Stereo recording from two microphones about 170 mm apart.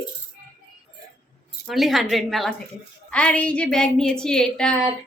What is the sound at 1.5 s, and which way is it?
A woman's voice, centre (ahead or behind).